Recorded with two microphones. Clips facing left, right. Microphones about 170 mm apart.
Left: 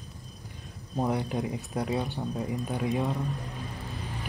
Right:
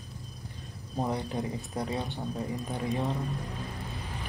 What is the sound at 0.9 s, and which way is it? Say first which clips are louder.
Speech: left 3 dB; 10° left (ahead or behind).